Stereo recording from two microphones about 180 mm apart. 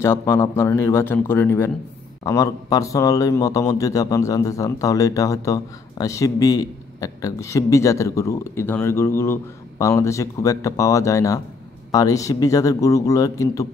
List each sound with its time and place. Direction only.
0.0 s a man's voice: 15° left (ahead or behind)